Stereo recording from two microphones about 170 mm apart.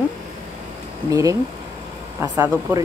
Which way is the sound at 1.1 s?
20° right (ahead or behind).